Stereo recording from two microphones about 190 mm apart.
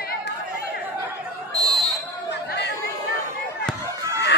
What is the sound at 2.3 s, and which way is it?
Chatter, 60° left (ahead or behind).